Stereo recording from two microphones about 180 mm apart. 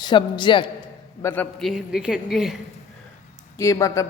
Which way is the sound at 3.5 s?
15° left (ahead or behind).